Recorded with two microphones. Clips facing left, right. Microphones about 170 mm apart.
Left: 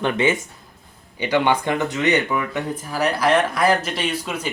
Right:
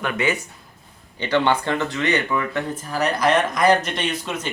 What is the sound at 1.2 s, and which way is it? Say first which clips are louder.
Speech: left 1 dB; 10° left (ahead or behind).